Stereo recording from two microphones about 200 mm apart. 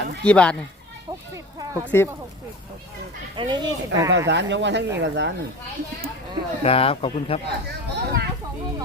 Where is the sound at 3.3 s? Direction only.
20° right (ahead or behind).